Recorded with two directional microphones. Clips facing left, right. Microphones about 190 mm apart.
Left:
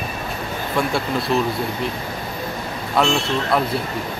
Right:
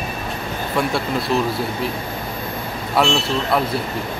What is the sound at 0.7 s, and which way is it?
Speech, centre (ahead or behind).